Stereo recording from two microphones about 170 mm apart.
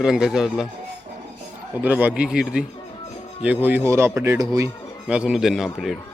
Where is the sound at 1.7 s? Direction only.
10° right (ahead or behind).